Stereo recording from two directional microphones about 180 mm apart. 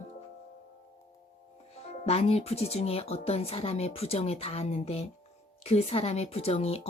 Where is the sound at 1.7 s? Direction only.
35° left (ahead or behind).